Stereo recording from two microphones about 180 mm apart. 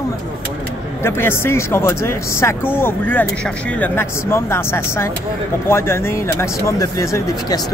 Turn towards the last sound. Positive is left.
turn(degrees=20)  # may be behind; listen again after turning